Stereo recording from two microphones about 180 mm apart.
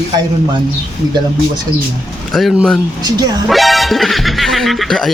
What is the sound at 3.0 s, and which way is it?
Speech, 20° right (ahead or behind).